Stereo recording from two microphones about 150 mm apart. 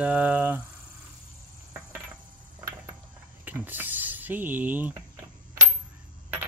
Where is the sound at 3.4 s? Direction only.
10° right (ahead or behind).